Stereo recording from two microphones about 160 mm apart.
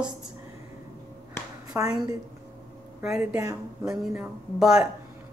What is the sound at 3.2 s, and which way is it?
Speech, 15° right (ahead or behind).